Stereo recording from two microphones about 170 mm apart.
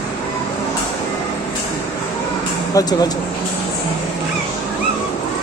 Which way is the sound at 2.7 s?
20° left (ahead or behind).